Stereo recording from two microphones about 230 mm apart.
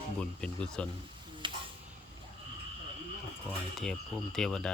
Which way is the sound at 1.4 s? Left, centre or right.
Right.